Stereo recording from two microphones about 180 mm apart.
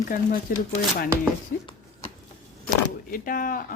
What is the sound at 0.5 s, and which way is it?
Speech, 50° left (ahead or behind).